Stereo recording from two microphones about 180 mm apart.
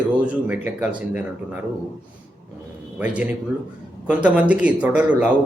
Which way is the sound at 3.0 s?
10° right (ahead or behind).